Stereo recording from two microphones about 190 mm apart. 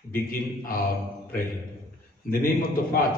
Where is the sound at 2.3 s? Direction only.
50° left (ahead or behind).